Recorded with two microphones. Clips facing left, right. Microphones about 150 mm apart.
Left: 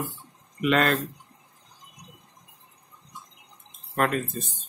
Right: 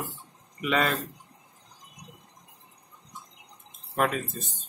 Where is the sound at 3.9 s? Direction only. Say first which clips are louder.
Left 2 dB; 5° right (ahead or behind).